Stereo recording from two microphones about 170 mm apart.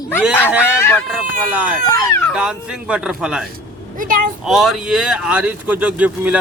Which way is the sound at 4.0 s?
55° right (ahead or behind).